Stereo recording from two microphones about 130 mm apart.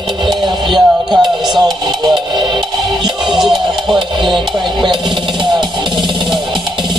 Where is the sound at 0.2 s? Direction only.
35° right (ahead or behind).